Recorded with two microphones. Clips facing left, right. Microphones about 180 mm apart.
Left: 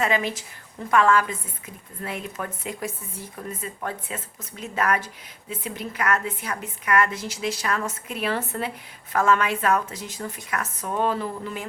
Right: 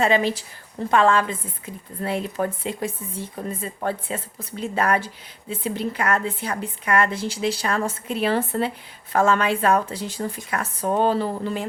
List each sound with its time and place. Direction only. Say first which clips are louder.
0.0 s a woman's voice: right 4 dB; 30° right (ahead or behind)